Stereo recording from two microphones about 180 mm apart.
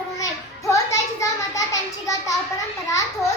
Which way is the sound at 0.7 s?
15° left (ahead or behind).